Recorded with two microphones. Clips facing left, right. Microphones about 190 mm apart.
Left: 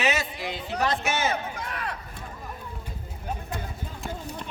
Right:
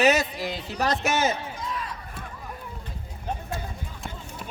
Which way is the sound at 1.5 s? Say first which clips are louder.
Even; 65° left (ahead or behind).